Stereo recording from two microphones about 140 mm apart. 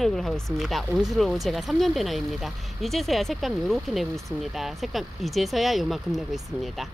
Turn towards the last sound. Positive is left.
turn(degrees=0)  # may be behind; listen again after turning